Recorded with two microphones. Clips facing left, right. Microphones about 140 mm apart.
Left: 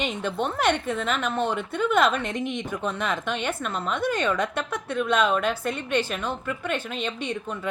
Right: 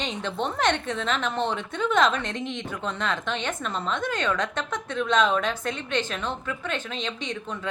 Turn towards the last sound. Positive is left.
turn(degrees=10)  # may be behind; listen again after turning